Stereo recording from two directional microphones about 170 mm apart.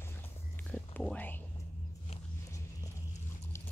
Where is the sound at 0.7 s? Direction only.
10° left (ahead or behind).